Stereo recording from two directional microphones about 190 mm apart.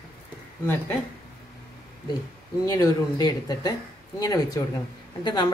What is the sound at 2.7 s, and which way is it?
A woman's voice, 20° left (ahead or behind).